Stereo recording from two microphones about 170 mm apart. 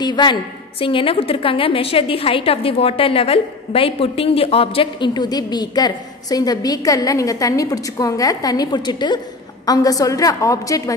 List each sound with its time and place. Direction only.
0.0 s a woman's voice: 25° left (ahead or behind)